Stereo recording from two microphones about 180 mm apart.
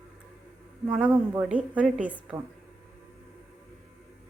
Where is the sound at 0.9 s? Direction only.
5° right (ahead or behind).